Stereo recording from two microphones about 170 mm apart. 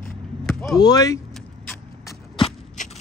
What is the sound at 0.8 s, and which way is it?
Speech, 20° left (ahead or behind).